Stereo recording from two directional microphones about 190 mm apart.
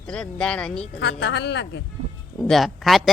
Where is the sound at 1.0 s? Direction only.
65° left (ahead or behind).